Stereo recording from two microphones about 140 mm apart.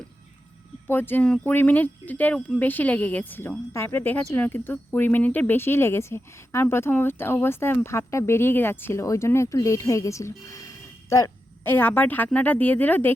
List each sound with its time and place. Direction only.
0.9 s speech: 15° left (ahead or behind)